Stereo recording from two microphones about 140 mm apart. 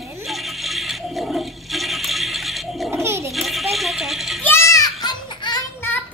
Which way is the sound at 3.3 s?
Centre (ahead or behind).